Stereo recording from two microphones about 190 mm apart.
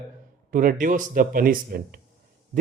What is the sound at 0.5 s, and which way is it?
Speech, 45° right (ahead or behind).